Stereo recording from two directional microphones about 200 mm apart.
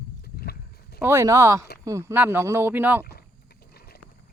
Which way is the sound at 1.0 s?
10° right (ahead or behind).